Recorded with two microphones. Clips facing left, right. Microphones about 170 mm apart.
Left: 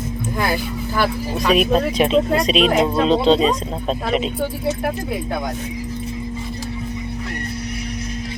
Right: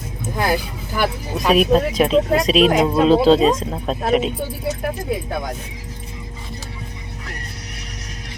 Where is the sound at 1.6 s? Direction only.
Centre (ahead or behind).